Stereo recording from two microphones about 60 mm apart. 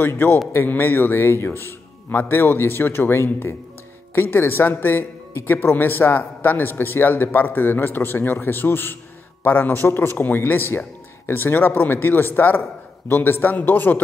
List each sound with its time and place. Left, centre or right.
0.0 s speech: left